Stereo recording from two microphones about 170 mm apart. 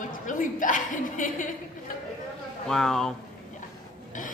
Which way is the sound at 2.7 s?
5° left (ahead or behind).